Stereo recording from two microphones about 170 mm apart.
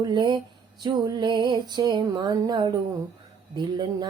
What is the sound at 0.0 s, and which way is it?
Music, 25° right (ahead or behind).